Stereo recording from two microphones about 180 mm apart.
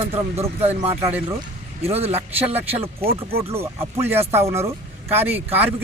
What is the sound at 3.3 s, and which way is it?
Speech, 15° right (ahead or behind).